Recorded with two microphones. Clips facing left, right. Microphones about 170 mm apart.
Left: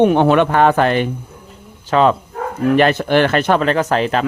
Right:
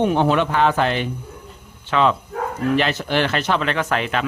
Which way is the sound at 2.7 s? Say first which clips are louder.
Left 9 dB; 50° left (ahead or behind).